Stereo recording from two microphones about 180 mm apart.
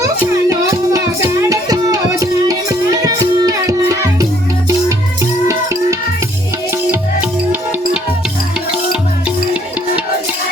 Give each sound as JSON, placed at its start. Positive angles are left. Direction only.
{"t": 0.0, "sound": "music", "side_deg": -20}
{"t": 5.5, "sound": "music", "side_deg": -20}
{"t": 9.2, "sound": "music", "side_deg": -5}